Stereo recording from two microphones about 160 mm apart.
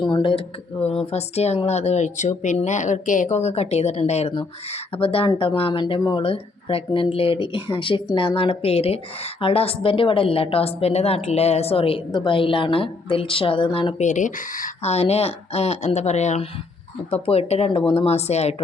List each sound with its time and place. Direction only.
0.0 s speech: 30° left (ahead or behind)
14.0 s speech: 50° left (ahead or behind)